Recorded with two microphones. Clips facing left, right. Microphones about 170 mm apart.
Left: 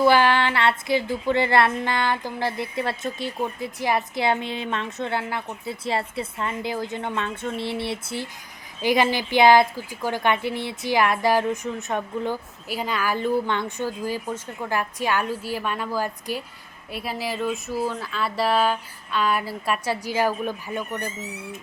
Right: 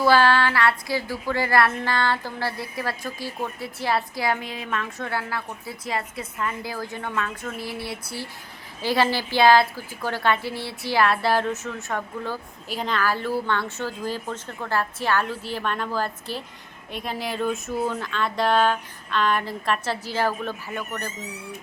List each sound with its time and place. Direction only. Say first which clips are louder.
0.0 s a woman's voice: even; 20° left (ahead or behind)